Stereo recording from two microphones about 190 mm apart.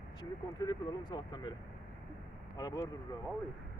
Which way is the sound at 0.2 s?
20° left (ahead or behind).